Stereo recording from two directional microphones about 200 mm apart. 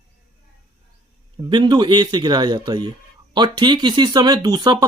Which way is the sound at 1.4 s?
20° right (ahead or behind).